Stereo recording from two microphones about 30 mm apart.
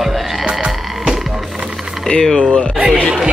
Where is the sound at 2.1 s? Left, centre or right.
Left.